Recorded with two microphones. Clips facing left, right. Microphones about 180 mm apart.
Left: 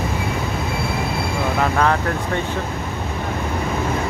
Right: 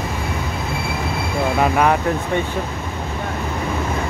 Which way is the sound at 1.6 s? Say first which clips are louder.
Right 2 dB; 15° right (ahead or behind).